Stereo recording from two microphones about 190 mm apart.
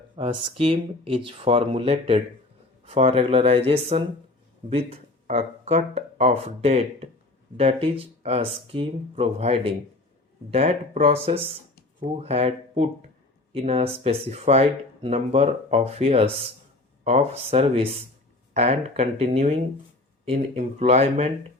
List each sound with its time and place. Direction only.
0.2 s speech: 30° right (ahead or behind)